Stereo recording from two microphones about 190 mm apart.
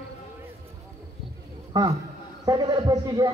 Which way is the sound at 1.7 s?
20° right (ahead or behind).